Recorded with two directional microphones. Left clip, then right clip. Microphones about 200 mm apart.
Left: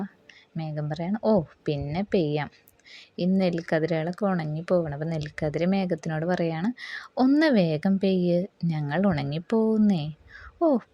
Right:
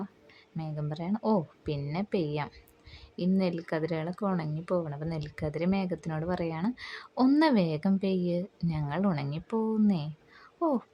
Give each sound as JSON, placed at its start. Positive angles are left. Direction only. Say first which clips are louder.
{"t": 0.5, "sound": "speech", "louder": "left 5 dB", "side_deg": 20}